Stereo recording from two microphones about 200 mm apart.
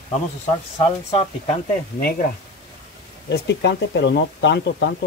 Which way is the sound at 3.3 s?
60° left (ahead or behind).